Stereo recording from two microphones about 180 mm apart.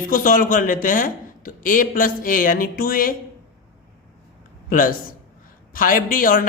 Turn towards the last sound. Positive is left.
turn(degrees=50)  # may be behind; listen again after turning